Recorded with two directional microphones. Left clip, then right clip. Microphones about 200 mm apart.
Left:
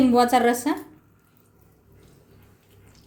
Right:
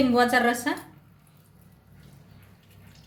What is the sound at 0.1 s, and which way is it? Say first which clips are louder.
Speech: left 3 dB; 45° left (ahead or behind).